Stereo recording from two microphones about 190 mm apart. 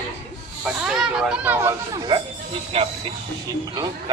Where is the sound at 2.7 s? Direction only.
30° right (ahead or behind).